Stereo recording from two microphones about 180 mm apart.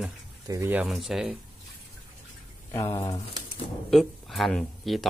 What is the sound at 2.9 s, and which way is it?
Speech, 20° left (ahead or behind).